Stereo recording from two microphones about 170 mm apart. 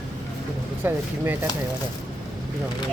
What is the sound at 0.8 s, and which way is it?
Speech, 10° right (ahead or behind).